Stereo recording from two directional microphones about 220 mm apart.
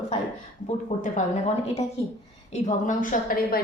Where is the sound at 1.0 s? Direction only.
30° left (ahead or behind).